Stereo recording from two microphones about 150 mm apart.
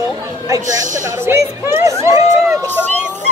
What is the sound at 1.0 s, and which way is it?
Speech, 20° right (ahead or behind).